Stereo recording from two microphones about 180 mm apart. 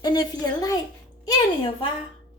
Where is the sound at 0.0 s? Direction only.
20° left (ahead or behind).